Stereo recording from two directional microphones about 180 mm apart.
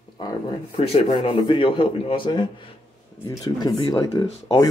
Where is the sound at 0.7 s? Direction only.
35° left (ahead or behind).